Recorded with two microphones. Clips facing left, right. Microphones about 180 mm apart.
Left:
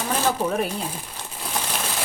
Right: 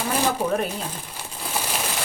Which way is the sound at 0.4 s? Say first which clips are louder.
Even; 5° left (ahead or behind).